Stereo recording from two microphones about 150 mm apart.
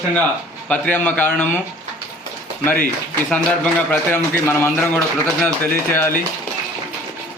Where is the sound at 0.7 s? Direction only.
10° left (ahead or behind).